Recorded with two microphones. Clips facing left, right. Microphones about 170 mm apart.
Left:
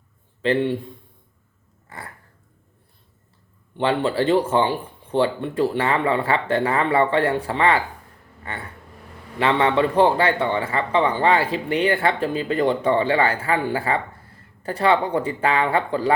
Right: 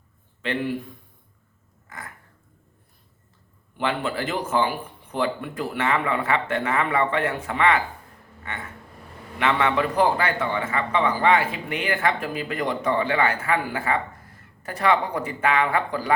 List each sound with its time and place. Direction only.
0.4 s a man's voice: 30° left (ahead or behind)
1.9 s a sound: 30° left (ahead or behind)
3.8 s a man's voice: 30° left (ahead or behind)